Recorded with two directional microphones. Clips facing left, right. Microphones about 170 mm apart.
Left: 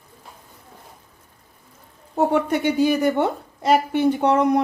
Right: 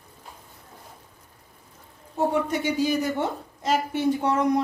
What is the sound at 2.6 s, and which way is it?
Speech, 60° left (ahead or behind).